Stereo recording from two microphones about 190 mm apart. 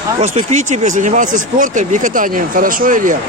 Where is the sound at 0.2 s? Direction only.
35° right (ahead or behind).